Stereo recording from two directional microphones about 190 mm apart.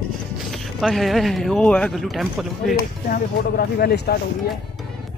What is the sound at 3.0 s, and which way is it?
Speech, 50° left (ahead or behind).